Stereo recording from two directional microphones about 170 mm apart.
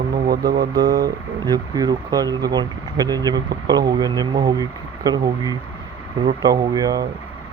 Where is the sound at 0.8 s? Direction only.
20° right (ahead or behind).